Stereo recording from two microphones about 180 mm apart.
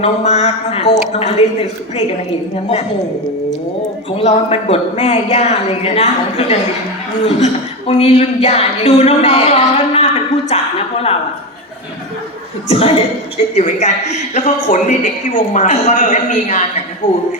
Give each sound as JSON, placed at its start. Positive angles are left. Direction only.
{"t": 0.0, "sound": "speech", "side_deg": 40}
{"t": 4.2, "sound": "a woman's voice", "side_deg": 35}
{"t": 12.6, "sound": "speech", "side_deg": 35}